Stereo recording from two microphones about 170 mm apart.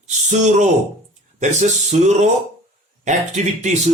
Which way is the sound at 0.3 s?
45° right (ahead or behind).